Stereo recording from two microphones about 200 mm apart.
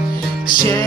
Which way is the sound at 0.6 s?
20° left (ahead or behind).